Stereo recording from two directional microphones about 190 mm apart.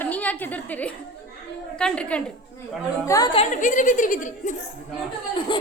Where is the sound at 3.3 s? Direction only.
40° left (ahead or behind).